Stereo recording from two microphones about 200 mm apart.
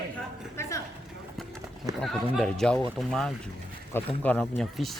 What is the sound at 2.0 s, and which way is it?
Speech, 5° left (ahead or behind).